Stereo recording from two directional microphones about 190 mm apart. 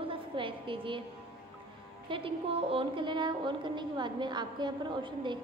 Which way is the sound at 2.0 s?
30° right (ahead or behind).